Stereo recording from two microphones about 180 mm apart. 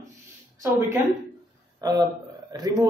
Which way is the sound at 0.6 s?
15° right (ahead or behind).